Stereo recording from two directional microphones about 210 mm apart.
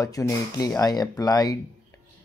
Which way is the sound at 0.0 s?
15° left (ahead or behind).